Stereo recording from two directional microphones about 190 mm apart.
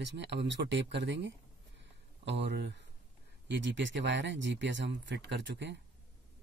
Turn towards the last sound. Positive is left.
turn(degrees=-65)  # may be behind; listen again after turning